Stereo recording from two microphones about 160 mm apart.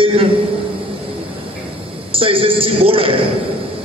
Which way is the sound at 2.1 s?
35° right (ahead or behind).